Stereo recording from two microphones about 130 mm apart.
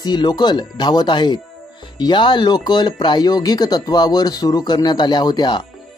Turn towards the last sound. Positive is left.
turn(degrees=35)  # may be behind; listen again after turning